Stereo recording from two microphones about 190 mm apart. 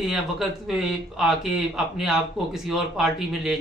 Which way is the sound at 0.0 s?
Centre (ahead or behind).